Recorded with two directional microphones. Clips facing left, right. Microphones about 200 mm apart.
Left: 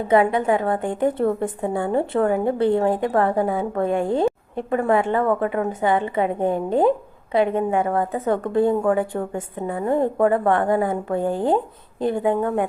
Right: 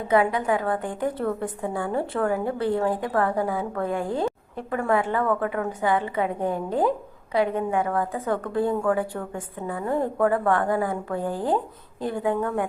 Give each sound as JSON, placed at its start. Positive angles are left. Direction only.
{"t": 0.1, "sound": "a woman's voice", "side_deg": 25}